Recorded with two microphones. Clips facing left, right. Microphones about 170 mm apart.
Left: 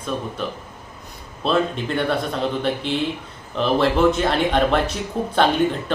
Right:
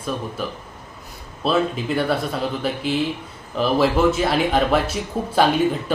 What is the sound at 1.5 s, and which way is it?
Speech, 5° right (ahead or behind).